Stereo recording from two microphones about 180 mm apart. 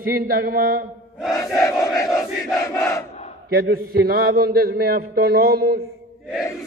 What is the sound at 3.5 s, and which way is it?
A man's voice, 55° right (ahead or behind).